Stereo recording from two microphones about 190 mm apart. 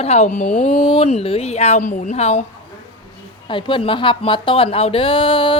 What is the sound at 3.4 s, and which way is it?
Speech, 25° left (ahead or behind).